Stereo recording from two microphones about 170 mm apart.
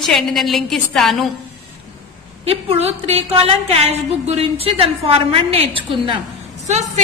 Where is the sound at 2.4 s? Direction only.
35° right (ahead or behind).